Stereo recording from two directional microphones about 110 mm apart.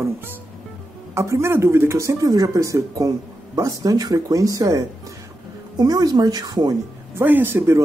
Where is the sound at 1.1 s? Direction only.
25° right (ahead or behind).